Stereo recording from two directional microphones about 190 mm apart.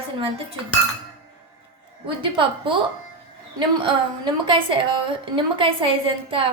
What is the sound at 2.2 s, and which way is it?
Speech, 25° right (ahead or behind).